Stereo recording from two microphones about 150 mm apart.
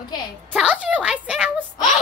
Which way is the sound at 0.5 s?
10° right (ahead or behind).